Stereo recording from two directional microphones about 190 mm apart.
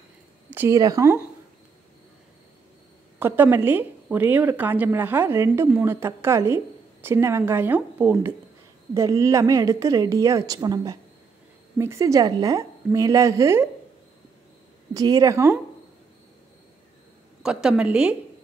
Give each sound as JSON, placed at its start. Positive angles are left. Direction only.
{"t": 0.5, "sound": "a woman's voice", "side_deg": -15}
{"t": 3.2, "sound": "a woman's voice", "side_deg": -10}
{"t": 15.0, "sound": "a woman's voice", "side_deg": -20}
{"t": 17.4, "sound": "a woman's voice", "side_deg": -5}